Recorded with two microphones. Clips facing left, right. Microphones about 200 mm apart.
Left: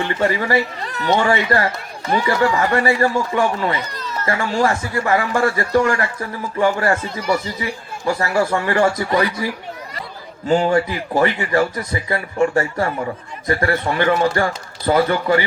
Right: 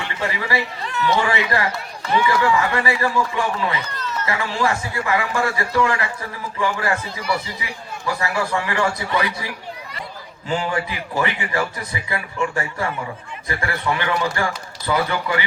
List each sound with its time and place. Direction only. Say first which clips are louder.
0.2 s speech: left 5 dB; 45° left (ahead or behind)
10.5 s speech: left 7 dB; 45° left (ahead or behind)